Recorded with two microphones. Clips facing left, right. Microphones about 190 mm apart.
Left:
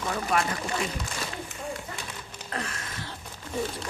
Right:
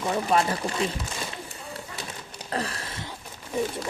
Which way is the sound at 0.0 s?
25° right (ahead or behind).